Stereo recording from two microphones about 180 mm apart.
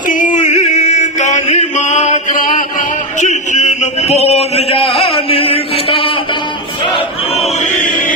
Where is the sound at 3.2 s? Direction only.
40° left (ahead or behind).